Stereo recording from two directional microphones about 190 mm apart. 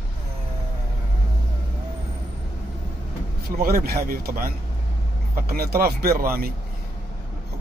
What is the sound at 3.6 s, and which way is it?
A man's voice, 50° right (ahead or behind).